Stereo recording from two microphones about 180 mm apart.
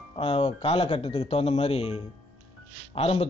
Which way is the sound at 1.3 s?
35° left (ahead or behind).